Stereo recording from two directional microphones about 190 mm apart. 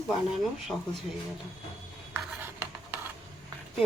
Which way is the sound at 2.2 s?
10° right (ahead or behind).